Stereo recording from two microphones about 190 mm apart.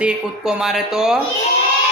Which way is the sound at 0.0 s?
5° right (ahead or behind).